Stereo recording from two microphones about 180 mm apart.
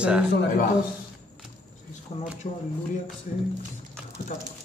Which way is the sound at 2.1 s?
30° left (ahead or behind).